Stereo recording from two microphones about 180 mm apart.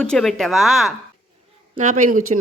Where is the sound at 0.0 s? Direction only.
5° left (ahead or behind).